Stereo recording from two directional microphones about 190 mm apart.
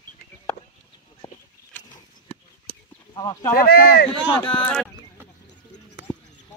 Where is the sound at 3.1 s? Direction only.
20° left (ahead or behind).